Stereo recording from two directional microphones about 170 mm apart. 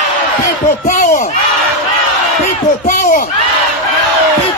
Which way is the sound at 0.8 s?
50° left (ahead or behind).